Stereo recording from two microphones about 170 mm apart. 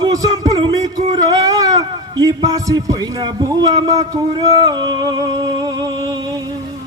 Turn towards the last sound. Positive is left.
turn(degrees=-25)  # may be behind; listen again after turning